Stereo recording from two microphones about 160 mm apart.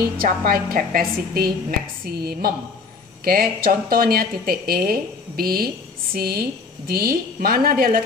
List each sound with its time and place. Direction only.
0.0 s a woman's voice: 65° right (ahead or behind)